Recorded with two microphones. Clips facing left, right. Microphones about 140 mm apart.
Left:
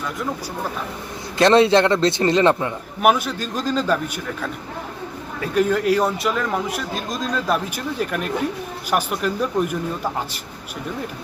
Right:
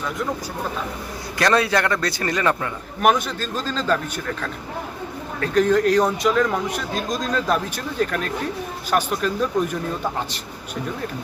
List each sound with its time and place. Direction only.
1.4 s a man's voice: 25° left (ahead or behind)
3.0 s a man's voice: 5° left (ahead or behind)